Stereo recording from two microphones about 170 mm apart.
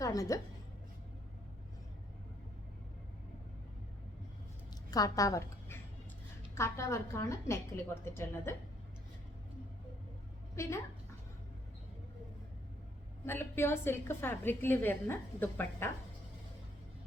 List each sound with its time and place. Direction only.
0.0 s a woman's voice: 20° left (ahead or behind)
4.9 s a woman's voice: 20° left (ahead or behind)
10.5 s a woman's voice: 15° left (ahead or behind)
13.2 s a woman's voice: 15° left (ahead or behind)